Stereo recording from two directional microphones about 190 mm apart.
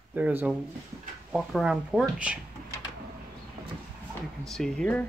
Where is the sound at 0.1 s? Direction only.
10° right (ahead or behind).